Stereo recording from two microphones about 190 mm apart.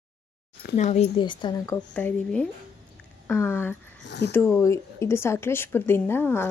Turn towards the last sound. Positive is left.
turn(degrees=10)  # may be behind; listen again after turning